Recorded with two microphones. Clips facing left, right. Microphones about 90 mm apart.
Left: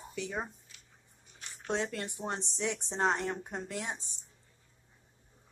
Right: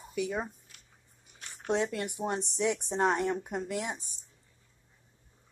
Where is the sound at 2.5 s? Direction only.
15° right (ahead or behind).